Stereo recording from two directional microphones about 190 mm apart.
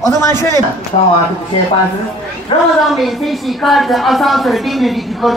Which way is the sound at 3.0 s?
Centre (ahead or behind).